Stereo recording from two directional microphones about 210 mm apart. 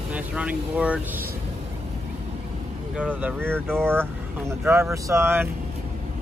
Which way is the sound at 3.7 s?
10° right (ahead or behind).